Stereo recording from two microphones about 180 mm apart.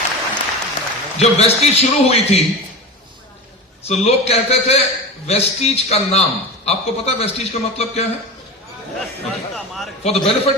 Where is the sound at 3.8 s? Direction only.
35° left (ahead or behind).